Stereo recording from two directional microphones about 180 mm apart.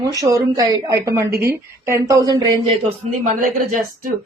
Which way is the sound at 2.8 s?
45° right (ahead or behind).